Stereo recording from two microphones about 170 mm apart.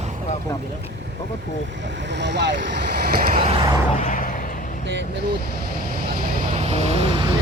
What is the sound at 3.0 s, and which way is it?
Vehicle, 65° right (ahead or behind).